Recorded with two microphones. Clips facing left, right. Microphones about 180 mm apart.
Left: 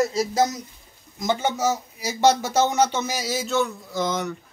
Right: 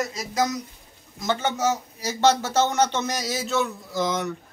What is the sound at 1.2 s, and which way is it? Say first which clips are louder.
Speech: left 1 dB; 10° left (ahead or behind).